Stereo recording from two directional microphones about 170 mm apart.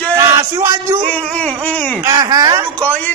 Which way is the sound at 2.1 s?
20° right (ahead or behind).